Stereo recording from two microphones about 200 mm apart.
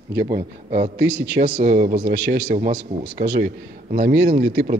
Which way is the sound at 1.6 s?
35° right (ahead or behind).